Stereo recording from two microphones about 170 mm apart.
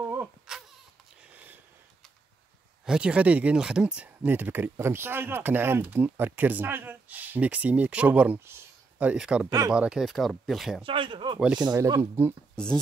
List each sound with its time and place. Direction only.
0.0 s a sound: 15° right (ahead or behind)
1.3 s a sound: 10° right (ahead or behind)
2.8 s speech: 5° right (ahead or behind)
10.8 s speech: 30° right (ahead or behind)
11.3 s speech: 5° right (ahead or behind)
11.6 s speech: 20° right (ahead or behind)